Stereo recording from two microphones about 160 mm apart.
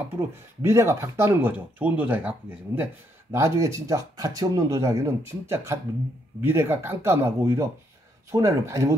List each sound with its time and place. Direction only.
0.1 s speech: 15° right (ahead or behind)